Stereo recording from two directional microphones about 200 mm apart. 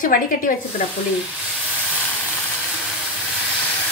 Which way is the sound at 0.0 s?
45° left (ahead or behind).